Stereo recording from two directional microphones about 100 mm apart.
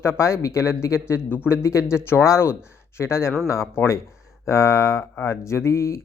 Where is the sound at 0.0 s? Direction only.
25° left (ahead or behind).